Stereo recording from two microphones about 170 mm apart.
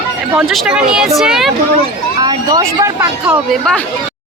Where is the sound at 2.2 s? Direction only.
25° right (ahead or behind).